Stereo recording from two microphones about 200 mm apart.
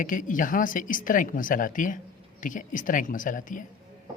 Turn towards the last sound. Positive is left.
turn(degrees=40)  # may be behind; listen again after turning